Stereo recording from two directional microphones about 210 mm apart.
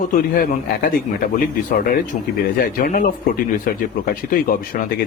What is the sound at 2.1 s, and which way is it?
Speech, 30° left (ahead or behind).